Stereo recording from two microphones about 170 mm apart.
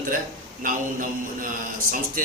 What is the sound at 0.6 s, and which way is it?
Mantra, 50° right (ahead or behind).